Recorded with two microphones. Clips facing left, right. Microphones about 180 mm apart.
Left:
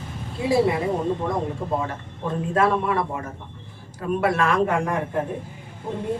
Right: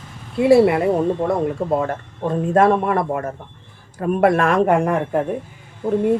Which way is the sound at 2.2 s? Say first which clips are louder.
Right 6 dB; 45° right (ahead or behind).